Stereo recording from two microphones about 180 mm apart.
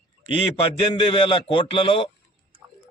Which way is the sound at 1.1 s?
30° left (ahead or behind).